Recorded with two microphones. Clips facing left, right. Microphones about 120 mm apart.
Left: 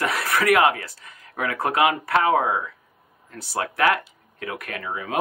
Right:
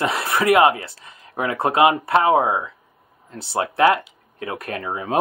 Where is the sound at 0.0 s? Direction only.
25° right (ahead or behind).